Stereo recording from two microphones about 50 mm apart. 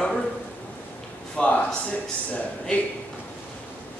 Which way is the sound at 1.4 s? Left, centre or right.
Centre.